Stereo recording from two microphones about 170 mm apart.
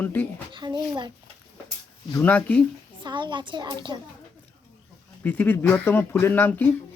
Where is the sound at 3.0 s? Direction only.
25° right (ahead or behind).